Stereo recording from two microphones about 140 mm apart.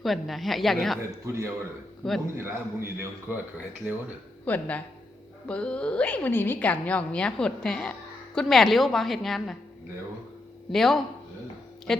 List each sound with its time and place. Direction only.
0.0 s a woman's voice: centre (ahead or behind)
1.2 s a man's voice: 20° right (ahead or behind)
2.0 s a woman's voice: centre (ahead or behind)
2.4 s a man's voice: 20° right (ahead or behind)
4.4 s a woman's voice: 10° left (ahead or behind)
10.7 s a woman's voice: centre (ahead or behind)